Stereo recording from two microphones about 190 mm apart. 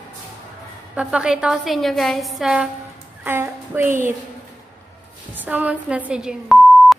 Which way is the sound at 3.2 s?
10° right (ahead or behind).